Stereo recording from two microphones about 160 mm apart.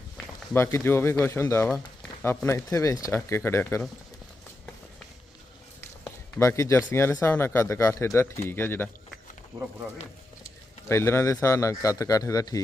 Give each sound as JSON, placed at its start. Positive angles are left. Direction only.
{"t": 0.5, "sound": "speech", "side_deg": 15}
{"t": 6.1, "sound": "a sound", "side_deg": 15}
{"t": 6.9, "sound": "speech", "side_deg": 15}
{"t": 10.8, "sound": "a man's voice", "side_deg": 15}